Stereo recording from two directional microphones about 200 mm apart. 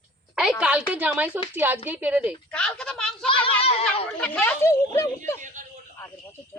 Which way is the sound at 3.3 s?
25° left (ahead or behind).